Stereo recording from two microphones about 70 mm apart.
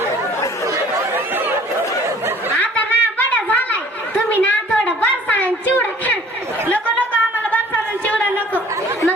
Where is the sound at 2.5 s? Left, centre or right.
Left.